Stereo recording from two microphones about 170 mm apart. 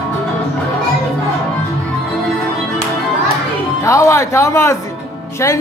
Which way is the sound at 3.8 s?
20° left (ahead or behind).